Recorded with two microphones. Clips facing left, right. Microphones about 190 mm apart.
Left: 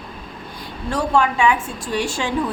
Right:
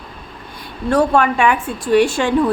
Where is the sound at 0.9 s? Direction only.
55° right (ahead or behind).